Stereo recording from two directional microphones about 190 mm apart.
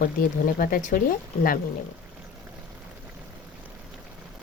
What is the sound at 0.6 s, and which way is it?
Speech, 50° left (ahead or behind).